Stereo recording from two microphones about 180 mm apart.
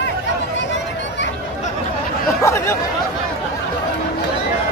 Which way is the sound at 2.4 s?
15° left (ahead or behind).